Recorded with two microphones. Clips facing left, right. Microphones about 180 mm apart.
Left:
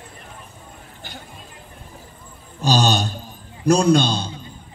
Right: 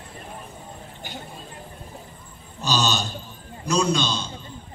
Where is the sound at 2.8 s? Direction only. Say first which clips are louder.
Left 4 dB; 55° left (ahead or behind).